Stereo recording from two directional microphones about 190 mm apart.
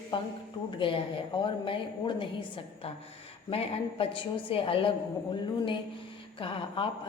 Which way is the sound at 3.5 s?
30° left (ahead or behind).